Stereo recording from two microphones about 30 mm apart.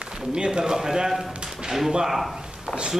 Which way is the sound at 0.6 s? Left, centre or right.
Right.